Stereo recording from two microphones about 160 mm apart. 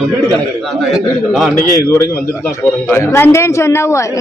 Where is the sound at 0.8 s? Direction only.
Centre (ahead or behind).